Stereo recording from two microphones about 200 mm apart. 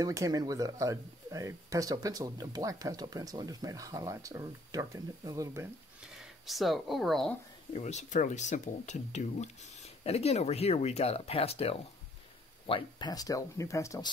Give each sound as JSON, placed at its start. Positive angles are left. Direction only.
{"t": 0.0, "sound": "speech", "side_deg": -15}
{"t": 6.1, "sound": "speech", "side_deg": 0}
{"t": 7.7, "sound": "speech", "side_deg": 35}